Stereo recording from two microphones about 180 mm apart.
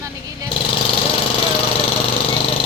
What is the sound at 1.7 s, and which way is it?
Vehicle, 30° left (ahead or behind).